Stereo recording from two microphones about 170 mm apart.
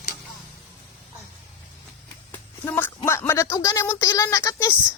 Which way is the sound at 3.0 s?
15° left (ahead or behind).